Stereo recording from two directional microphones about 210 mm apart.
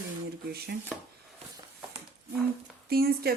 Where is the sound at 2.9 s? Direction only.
45° right (ahead or behind).